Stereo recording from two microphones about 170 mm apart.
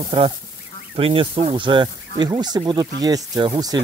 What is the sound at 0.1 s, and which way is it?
Speech, 30° right (ahead or behind).